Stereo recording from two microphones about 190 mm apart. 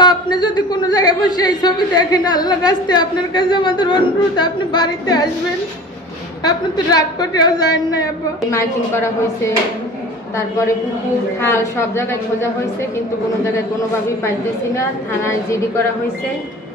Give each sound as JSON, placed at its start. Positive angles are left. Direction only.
{"t": 0.0, "sound": "a man's voice", "side_deg": 25}
{"t": 6.4, "sound": "a man's voice", "side_deg": 20}
{"t": 11.4, "sound": "a woman's voice", "side_deg": 15}
{"t": 14.8, "sound": "a woman's voice", "side_deg": 15}